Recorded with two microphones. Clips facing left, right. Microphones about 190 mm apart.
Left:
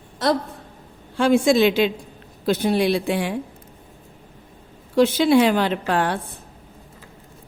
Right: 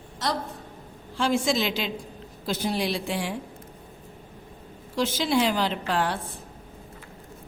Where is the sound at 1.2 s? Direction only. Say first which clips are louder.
Left 8 dB; 60° left (ahead or behind).